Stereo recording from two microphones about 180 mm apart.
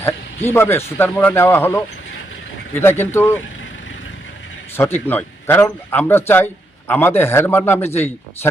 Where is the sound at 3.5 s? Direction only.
90° left.